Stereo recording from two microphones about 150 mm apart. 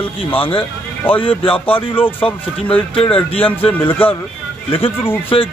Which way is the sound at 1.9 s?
15° left (ahead or behind).